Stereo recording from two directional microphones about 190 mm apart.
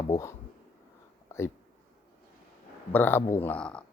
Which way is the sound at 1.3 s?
15° left (ahead or behind).